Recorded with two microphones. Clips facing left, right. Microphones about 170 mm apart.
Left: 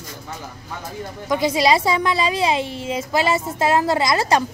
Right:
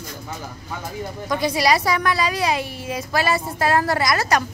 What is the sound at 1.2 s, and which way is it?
A woman's voice, 20° left (ahead or behind).